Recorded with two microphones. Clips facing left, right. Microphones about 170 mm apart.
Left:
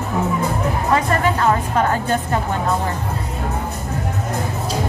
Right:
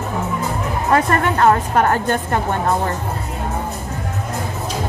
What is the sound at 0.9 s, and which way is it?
A woman's voice, 55° right (ahead or behind).